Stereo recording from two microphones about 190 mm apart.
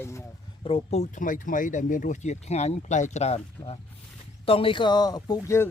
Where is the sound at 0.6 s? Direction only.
30° left (ahead or behind).